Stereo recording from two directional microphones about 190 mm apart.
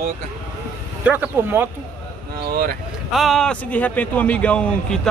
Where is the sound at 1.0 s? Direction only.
10° right (ahead or behind).